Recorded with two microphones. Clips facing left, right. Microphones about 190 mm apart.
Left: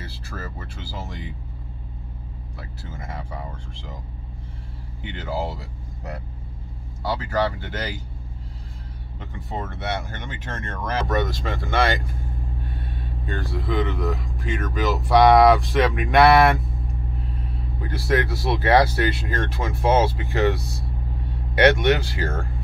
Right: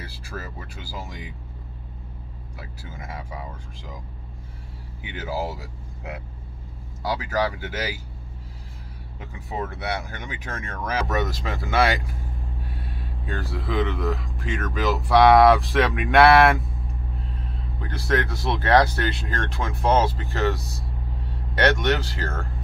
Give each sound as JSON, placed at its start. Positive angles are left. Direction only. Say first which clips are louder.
{"t": 3.0, "sound": "speech", "louder": "left 1 dB", "side_deg": -5}
{"t": 5.0, "sound": "speech", "louder": "left 1 dB", "side_deg": -5}
{"t": 7.2, "sound": "speech", "louder": "left 2 dB", "side_deg": -5}
{"t": 9.2, "sound": "speech", "louder": "right 1 dB", "side_deg": -5}
{"t": 17.8, "sound": "speech", "louder": "left 2 dB", "side_deg": 5}
{"t": 21.5, "sound": "speech", "louder": "left 4 dB", "side_deg": 10}